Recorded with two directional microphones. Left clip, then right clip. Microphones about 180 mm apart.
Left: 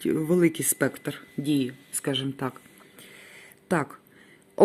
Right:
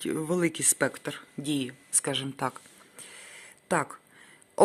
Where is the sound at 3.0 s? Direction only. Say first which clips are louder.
Right 1 dB; 10° right (ahead or behind).